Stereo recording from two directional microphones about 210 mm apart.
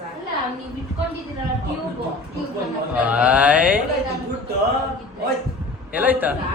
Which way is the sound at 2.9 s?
5° right (ahead or behind).